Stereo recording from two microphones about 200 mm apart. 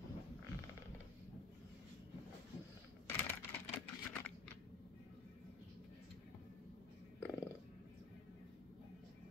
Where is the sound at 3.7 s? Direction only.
10° left (ahead or behind).